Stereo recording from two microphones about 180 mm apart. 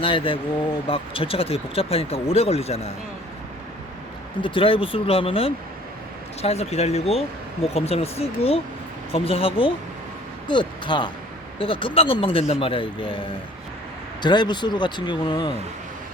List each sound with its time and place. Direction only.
0.0 s speech: 30° left (ahead or behind)
4.4 s speech: 30° left (ahead or behind)